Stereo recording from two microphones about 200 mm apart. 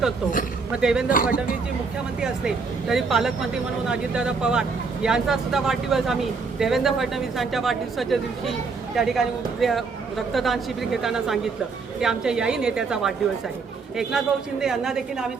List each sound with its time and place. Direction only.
0.7 s speech: 5° right (ahead or behind)
1.1 s speech: 45° left (ahead or behind)
2.2 s speech: centre (ahead or behind)